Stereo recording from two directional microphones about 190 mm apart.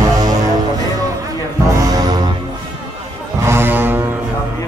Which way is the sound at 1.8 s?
20° right (ahead or behind).